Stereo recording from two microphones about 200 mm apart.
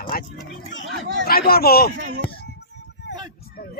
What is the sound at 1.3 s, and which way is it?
Speech, 50° left (ahead or behind).